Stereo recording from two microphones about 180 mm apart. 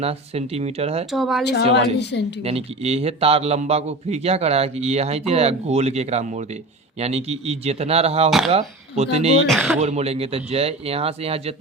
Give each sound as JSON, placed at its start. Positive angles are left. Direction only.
{"t": 0.0, "sound": "a man's voice", "side_deg": -35}
{"t": 1.1, "sound": "speech", "side_deg": 0}
{"t": 1.7, "sound": "a woman's voice", "side_deg": 70}
{"t": 2.4, "sound": "a man's voice", "side_deg": -35}
{"t": 9.5, "sound": "speech", "side_deg": 0}
{"t": 9.8, "sound": "a man's voice", "side_deg": -35}